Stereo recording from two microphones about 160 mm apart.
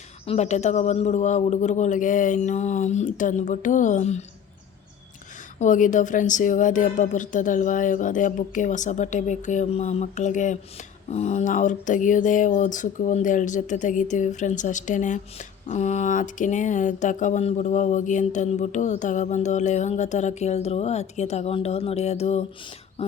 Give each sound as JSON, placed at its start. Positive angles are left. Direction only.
{"t": 0.3, "sound": "speech", "side_deg": 45}
{"t": 5.5, "sound": "speech", "side_deg": 50}